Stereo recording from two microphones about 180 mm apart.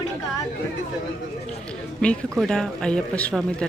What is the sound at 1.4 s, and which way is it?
Speech, 5° left (ahead or behind).